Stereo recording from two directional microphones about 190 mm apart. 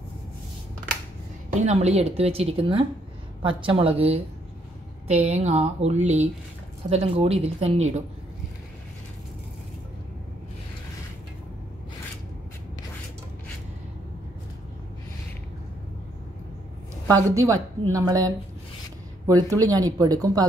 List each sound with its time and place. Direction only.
1.5 s speech: 35° right (ahead or behind)
17.1 s a woman's voice: 15° right (ahead or behind)
19.6 s speech: 20° right (ahead or behind)